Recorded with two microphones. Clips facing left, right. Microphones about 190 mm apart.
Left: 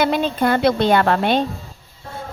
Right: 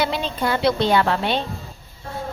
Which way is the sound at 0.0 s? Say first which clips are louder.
Left 5 dB; 50° left (ahead or behind).